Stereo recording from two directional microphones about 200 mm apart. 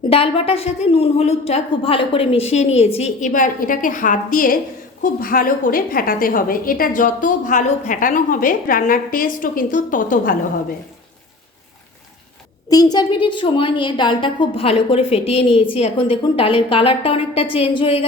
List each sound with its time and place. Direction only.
0.1 s a woman's voice: 30° left (ahead or behind)
12.6 s a woman's voice: 20° left (ahead or behind)